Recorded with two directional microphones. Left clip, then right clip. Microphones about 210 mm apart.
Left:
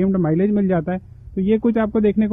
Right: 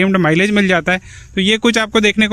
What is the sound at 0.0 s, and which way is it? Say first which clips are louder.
A man's voice: right 6 dB; 20° right (ahead or behind).